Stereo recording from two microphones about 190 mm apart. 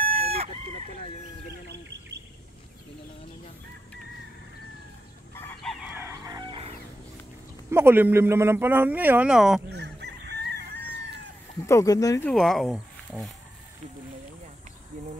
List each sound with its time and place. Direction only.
0.1 s chicken: 30° right (ahead or behind)
1.9 s bird: 65° right (ahead or behind)
5.3 s chicken: 10° left (ahead or behind)
5.6 s chicken: centre (ahead or behind); by 6.7 s 25° right (ahead or behind)
7.7 s speech: 10° right (ahead or behind)
9.7 s chicken: 60° right (ahead or behind)
11.6 s speech: 15° left (ahead or behind)
12.3 s speech: centre (ahead or behind)